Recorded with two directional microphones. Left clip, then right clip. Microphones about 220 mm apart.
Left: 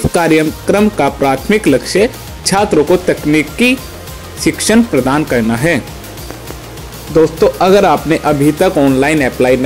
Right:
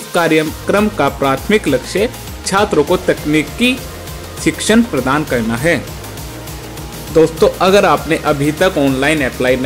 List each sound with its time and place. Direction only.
0.1 s speech: 5° left (ahead or behind)
7.2 s speech: 10° left (ahead or behind)